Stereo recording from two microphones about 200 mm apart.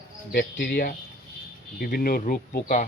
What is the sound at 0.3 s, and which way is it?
Speech, 40° left (ahead or behind).